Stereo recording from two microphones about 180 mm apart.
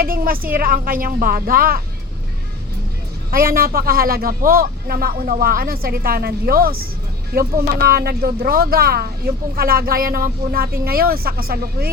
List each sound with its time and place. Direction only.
0.0 s a woman's voice: 55° right (ahead or behind)
3.3 s speech: 55° right (ahead or behind)